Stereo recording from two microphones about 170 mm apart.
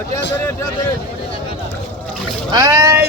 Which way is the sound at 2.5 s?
20° right (ahead or behind).